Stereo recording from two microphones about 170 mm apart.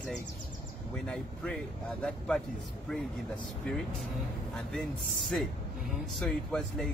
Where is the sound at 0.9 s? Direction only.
5° left (ahead or behind).